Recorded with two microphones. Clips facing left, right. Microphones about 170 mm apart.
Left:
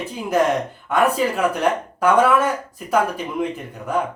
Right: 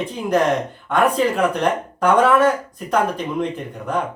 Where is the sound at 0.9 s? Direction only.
5° left (ahead or behind).